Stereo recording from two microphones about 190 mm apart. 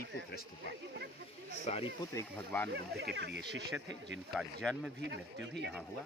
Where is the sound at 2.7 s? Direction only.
60° right (ahead or behind).